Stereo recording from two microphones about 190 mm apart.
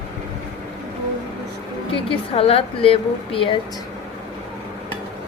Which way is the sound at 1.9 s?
30° left (ahead or behind).